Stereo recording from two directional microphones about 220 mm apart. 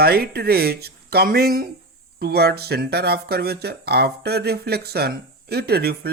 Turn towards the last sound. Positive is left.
turn(degrees=-45)  # may be behind; listen again after turning